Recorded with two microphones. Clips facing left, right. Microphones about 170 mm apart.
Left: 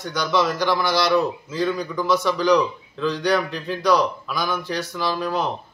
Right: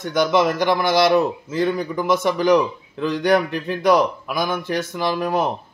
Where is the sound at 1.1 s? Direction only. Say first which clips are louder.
Right 2 dB; 15° right (ahead or behind).